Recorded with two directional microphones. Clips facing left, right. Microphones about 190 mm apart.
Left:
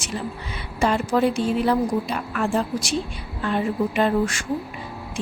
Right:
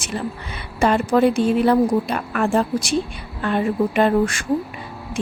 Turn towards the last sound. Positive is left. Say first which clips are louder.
# right 3 dB
turn(degrees=-55)  # may be behind; listen again after turning